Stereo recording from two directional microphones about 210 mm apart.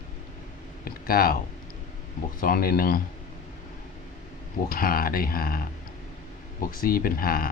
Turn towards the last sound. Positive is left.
turn(degrees=45)  # may be behind; listen again after turning